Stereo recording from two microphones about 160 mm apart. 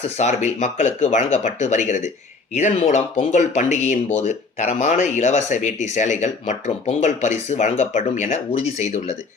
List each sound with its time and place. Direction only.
0.2 s speech: 45° left (ahead or behind)